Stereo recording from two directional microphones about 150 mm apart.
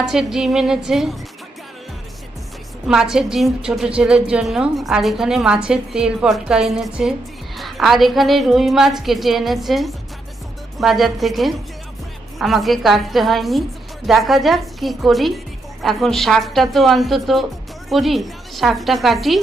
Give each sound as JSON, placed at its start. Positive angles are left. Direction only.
{"t": 0.0, "sound": "a woman's voice", "side_deg": -5}
{"t": 2.8, "sound": "a woman's voice", "side_deg": -5}